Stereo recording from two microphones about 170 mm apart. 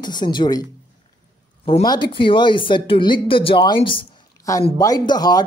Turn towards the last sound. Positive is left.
turn(degrees=25)  # may be behind; listen again after turning